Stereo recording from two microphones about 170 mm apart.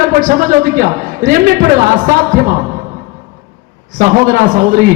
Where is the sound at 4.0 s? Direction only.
50° right (ahead or behind).